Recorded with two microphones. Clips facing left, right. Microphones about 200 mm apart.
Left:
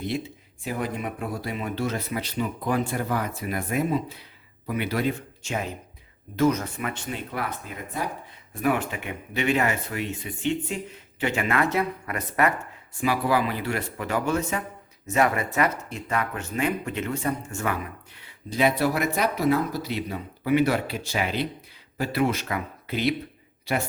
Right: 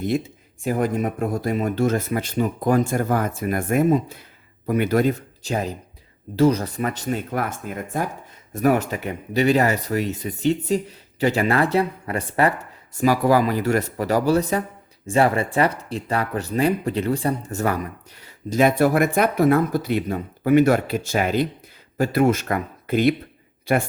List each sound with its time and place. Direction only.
0.0 s speech: 45° right (ahead or behind)